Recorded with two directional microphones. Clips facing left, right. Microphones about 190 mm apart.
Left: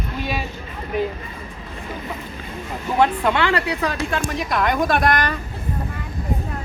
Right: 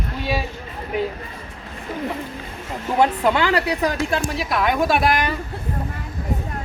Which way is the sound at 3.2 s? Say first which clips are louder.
Right 1 dB; 40° right (ahead or behind).